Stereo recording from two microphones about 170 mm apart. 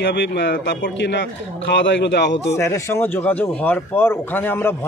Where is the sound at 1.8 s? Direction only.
90° left.